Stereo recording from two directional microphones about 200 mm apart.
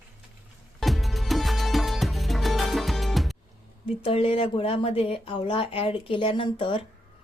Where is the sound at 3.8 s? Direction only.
30° left (ahead or behind).